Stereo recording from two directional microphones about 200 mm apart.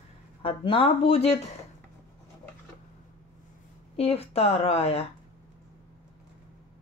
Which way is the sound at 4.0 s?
30° left (ahead or behind).